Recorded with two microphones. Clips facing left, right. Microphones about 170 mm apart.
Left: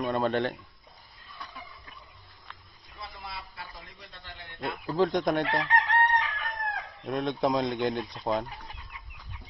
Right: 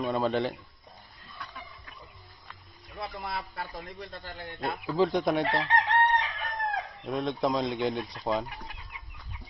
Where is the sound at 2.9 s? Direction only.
60° right (ahead or behind); by 4.8 s 40° right (ahead or behind).